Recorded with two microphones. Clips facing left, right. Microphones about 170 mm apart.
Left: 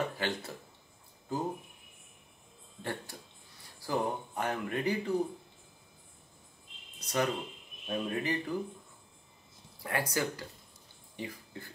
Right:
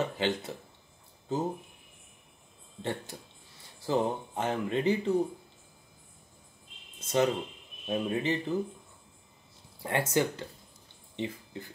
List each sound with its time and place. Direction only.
0.0 s speech: 20° right (ahead or behind)
2.8 s speech: 20° right (ahead or behind)
7.0 s speech: 25° right (ahead or behind)
9.8 s speech: 25° right (ahead or behind)